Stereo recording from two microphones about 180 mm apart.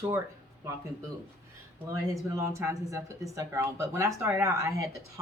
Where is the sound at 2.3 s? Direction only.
15° right (ahead or behind).